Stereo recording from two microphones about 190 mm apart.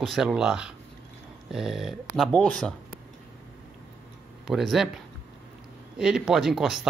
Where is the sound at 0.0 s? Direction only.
Centre (ahead or behind).